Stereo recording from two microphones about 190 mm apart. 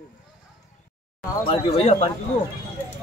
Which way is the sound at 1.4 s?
30° left (ahead or behind).